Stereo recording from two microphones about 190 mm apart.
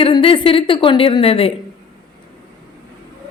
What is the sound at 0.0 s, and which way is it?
A woman's voice, 30° left (ahead or behind).